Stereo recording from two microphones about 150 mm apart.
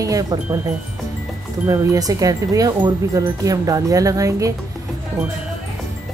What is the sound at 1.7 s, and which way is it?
Speech, 25° right (ahead or behind).